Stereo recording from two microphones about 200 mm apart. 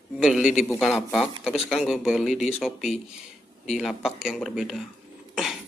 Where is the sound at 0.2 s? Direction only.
Centre (ahead or behind).